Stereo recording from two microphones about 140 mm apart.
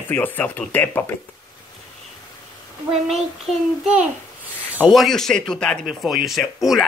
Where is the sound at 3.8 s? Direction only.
10° right (ahead or behind).